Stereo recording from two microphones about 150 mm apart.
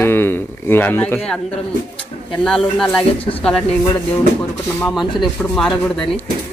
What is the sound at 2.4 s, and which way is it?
Speech, 5° left (ahead or behind).